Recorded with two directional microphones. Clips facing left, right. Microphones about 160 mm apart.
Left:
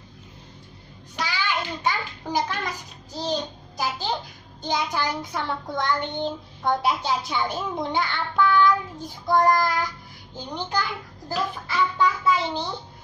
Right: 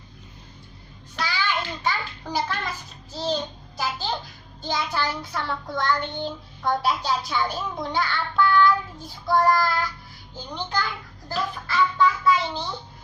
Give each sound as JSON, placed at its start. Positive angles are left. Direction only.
{"t": 1.1, "sound": "a child's voice", "side_deg": 15}